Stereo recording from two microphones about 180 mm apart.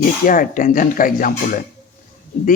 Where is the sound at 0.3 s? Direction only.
50° left (ahead or behind).